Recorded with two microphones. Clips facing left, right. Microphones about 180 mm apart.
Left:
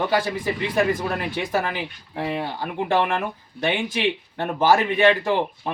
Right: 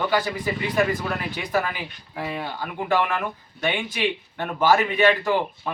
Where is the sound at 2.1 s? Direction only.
25° left (ahead or behind).